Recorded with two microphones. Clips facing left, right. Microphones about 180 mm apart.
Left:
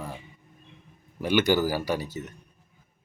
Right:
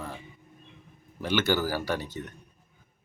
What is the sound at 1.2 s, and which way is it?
Speech, 15° left (ahead or behind).